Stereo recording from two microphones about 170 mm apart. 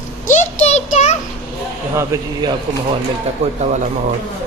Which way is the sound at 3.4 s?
35° right (ahead or behind).